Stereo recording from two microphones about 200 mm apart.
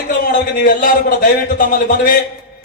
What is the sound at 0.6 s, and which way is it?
A man's voice, 45° left (ahead or behind).